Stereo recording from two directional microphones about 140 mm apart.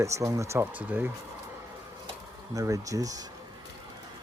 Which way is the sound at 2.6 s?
25° right (ahead or behind).